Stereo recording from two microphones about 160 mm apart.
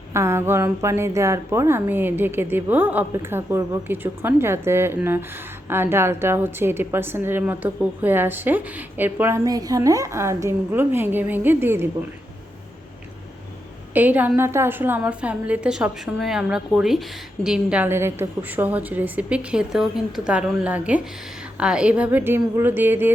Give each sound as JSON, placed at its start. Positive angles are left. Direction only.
{"t": 0.1, "sound": "a woman's voice", "side_deg": -15}
{"t": 9.4, "sound": "a woman's voice", "side_deg": -20}
{"t": 13.9, "sound": "a woman's voice", "side_deg": -10}